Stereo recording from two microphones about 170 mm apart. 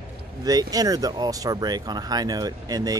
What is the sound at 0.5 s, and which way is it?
Speech, 20° right (ahead or behind).